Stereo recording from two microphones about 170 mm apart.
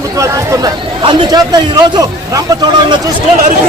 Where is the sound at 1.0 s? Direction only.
25° right (ahead or behind).